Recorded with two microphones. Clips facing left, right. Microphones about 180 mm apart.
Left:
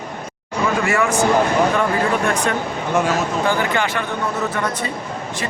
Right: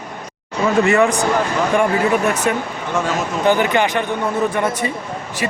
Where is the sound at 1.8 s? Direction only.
5° right (ahead or behind).